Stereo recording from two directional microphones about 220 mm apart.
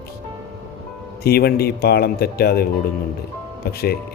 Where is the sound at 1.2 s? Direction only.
45° left (ahead or behind).